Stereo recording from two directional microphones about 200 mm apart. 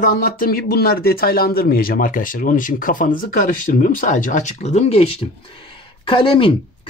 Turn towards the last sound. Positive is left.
turn(degrees=25)  # may be behind; listen again after turning